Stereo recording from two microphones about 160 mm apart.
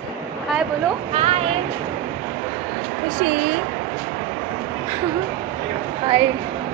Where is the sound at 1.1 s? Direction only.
40° right (ahead or behind).